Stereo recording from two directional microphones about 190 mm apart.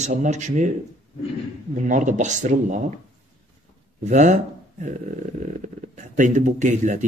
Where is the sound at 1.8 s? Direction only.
40° right (ahead or behind).